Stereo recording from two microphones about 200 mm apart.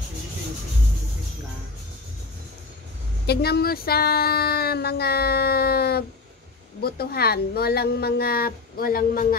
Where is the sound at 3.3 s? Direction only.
50° left (ahead or behind).